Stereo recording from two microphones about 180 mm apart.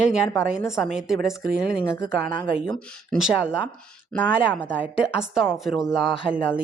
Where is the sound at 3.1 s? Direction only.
5° right (ahead or behind).